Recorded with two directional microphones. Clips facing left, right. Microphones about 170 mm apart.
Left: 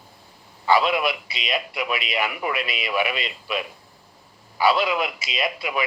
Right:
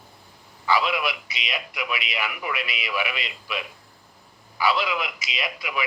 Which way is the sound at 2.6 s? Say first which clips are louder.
Left 4 dB; 45° left (ahead or behind).